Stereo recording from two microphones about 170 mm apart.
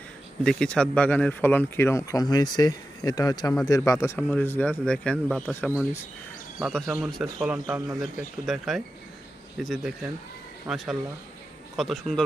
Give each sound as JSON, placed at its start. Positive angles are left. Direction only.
{"t": 0.4, "sound": "speech", "side_deg": 5}
{"t": 6.6, "sound": "a man's voice", "side_deg": 0}